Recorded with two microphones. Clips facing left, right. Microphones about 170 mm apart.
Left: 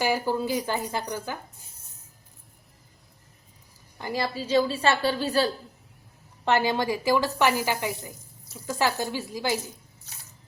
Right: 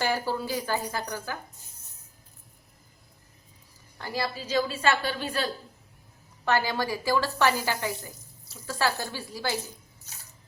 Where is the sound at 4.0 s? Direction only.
20° left (ahead or behind); by 5.5 s 35° left (ahead or behind).